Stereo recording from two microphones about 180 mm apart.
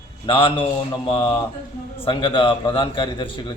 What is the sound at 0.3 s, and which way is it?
A man's voice, 30° left (ahead or behind).